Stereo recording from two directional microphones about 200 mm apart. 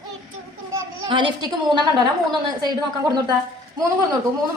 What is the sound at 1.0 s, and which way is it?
Speech, 25° right (ahead or behind).